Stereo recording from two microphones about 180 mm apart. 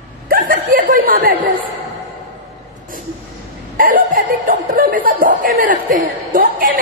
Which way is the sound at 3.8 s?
50° right (ahead or behind).